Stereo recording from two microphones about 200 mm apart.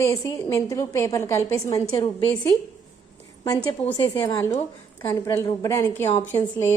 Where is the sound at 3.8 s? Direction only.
25° left (ahead or behind).